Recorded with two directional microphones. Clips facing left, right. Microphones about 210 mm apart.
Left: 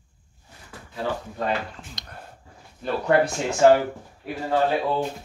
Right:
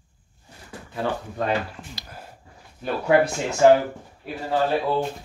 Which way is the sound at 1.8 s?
5° right (ahead or behind).